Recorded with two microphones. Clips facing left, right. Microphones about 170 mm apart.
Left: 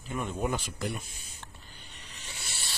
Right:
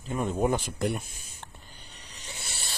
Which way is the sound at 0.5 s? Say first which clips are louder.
Right 5 dB; 55° right (ahead or behind).